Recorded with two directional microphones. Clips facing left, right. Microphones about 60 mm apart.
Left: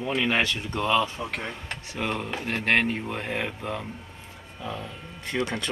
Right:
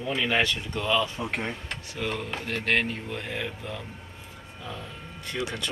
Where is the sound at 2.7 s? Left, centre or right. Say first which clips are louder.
Left 3 dB; left.